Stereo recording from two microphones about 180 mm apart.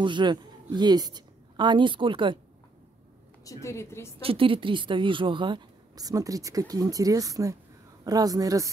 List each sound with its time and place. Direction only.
0.0 s a woman's voice: 25° right (ahead or behind)
3.4 s a woman's voice: 15° left (ahead or behind)
4.2 s speech: 30° right (ahead or behind)